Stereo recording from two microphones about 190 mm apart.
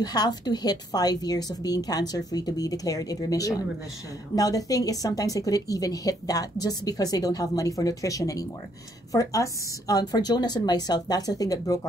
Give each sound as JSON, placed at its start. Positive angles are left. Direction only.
{"t": 0.0, "sound": "a woman's voice", "side_deg": 20}